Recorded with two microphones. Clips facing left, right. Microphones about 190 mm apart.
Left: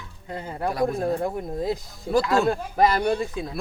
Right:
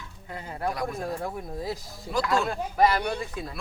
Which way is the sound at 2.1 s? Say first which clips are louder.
Left 6 dB; 35° left (ahead or behind).